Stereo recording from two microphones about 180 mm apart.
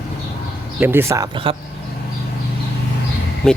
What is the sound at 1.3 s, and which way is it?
Speech, 30° right (ahead or behind).